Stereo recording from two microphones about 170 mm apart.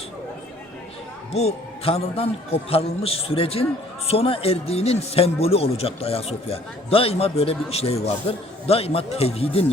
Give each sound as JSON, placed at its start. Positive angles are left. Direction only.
{"t": 1.3, "sound": "a man's voice", "side_deg": 40}